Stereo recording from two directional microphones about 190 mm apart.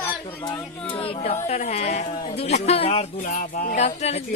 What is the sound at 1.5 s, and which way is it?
Speech, 35° left (ahead or behind).